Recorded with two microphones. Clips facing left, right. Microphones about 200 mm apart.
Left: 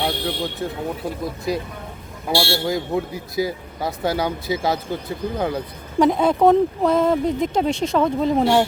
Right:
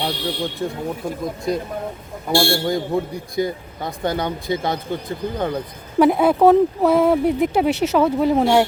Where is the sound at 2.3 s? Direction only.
50° right (ahead or behind).